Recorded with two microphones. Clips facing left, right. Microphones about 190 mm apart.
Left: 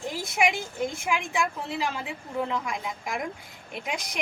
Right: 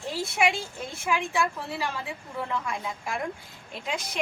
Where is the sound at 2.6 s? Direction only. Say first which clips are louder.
Even; 15° left (ahead or behind).